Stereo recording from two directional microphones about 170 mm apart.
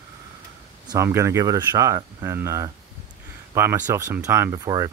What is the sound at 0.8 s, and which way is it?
Speech, 15° right (ahead or behind).